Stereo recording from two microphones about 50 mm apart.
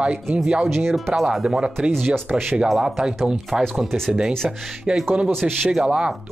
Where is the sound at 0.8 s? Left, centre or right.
Right.